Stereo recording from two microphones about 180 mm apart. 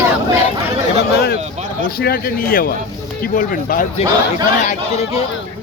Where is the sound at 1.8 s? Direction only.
55° left (ahead or behind).